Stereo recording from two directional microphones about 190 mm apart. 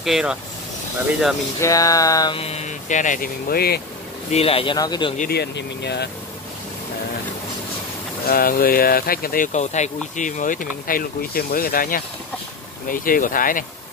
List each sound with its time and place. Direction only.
0.0 s speech: 5° right (ahead or behind)
1.6 s speech: 20° left (ahead or behind); by 3.8 s 55° left (ahead or behind)
4.3 s speech: 30° left (ahead or behind)
5.3 s speech: 60° left (ahead or behind)
8.3 s speech: 50° left (ahead or behind)